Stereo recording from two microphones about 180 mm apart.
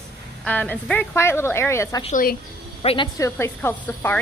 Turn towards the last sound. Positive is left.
turn(degrees=10)  # may be behind; listen again after turning